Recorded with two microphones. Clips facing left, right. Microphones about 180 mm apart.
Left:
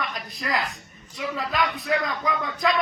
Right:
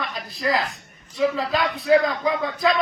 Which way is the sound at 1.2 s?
30° right (ahead or behind).